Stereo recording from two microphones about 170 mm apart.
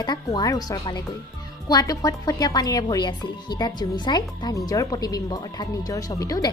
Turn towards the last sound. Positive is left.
turn(degrees=20)  # may be behind; listen again after turning